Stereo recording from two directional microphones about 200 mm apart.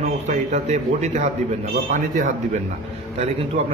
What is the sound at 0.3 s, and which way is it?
A man's voice, 35° right (ahead or behind).